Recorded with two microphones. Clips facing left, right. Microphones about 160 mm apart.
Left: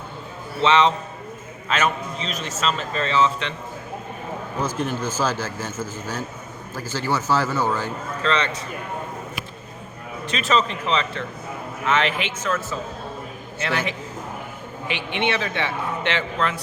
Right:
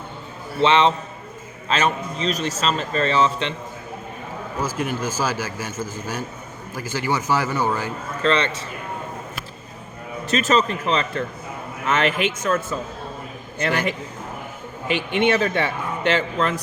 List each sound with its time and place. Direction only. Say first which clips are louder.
0.6 s a man's voice: right 1 dB; 30° right (ahead or behind)
4.6 s a man's voice: even; 10° right (ahead or behind)
8.2 s a man's voice: right 3 dB; 35° right (ahead or behind)
10.2 s a man's voice: right 3 dB; 45° right (ahead or behind)
13.7 s a man's voice: right 3 dB; 45° right (ahead or behind)